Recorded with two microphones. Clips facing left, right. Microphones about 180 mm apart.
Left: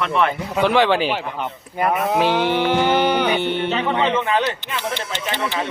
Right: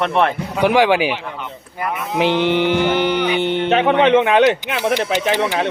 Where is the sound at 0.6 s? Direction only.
10° right (ahead or behind).